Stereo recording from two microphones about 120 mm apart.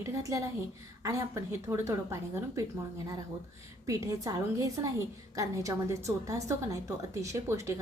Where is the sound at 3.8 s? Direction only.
25° right (ahead or behind).